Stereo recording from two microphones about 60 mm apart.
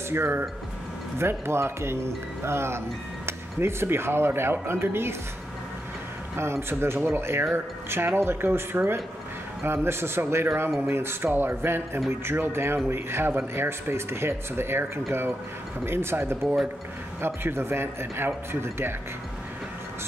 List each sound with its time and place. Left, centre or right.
0.1 s speech: right
6.3 s speech: right